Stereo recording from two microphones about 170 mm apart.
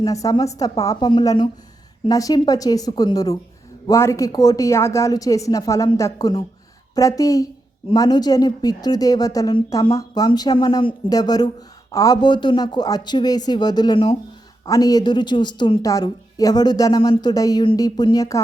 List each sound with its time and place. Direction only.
0.0 s a woman's voice: 20° left (ahead or behind)